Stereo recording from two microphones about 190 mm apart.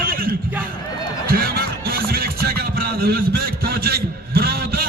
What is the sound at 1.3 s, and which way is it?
Music, 55° right (ahead or behind).